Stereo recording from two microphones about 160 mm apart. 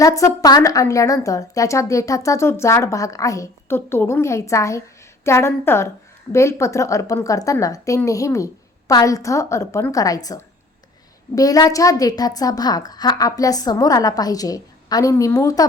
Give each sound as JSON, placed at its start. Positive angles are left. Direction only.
{"t": 0.0, "sound": "a woman's voice", "side_deg": 20}